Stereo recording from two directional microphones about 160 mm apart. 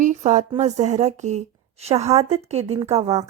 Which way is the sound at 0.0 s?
50° right (ahead or behind).